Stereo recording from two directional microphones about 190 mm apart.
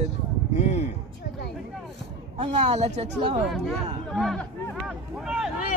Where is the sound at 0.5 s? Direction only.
35° left (ahead or behind).